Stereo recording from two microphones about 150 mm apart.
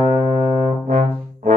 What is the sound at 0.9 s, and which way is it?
Brass instrument, 60° right (ahead or behind).